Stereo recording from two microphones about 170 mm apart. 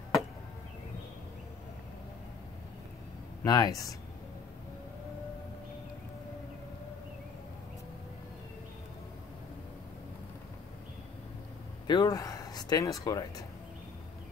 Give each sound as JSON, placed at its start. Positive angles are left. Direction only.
{"t": 3.4, "sound": "speech", "side_deg": 20}
{"t": 11.9, "sound": "speech", "side_deg": 20}